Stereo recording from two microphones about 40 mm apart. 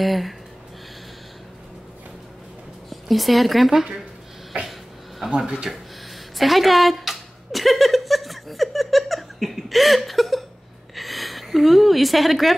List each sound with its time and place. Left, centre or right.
0.0 s speech: centre
2.9 s speech: centre
5.2 s speech: centre
6.3 s a sound: centre